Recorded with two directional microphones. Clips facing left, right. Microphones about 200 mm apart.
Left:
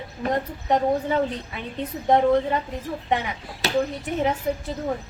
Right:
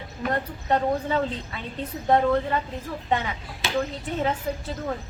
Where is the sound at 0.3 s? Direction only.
15° left (ahead or behind).